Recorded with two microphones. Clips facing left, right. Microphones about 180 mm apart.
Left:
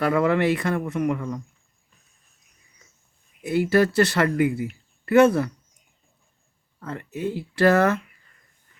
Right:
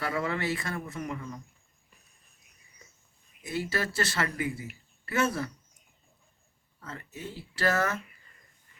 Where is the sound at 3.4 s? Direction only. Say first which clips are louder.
Left 12 dB; 60° left (ahead or behind).